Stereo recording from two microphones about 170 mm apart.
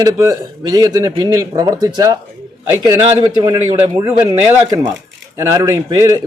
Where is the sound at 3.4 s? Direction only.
15° right (ahead or behind).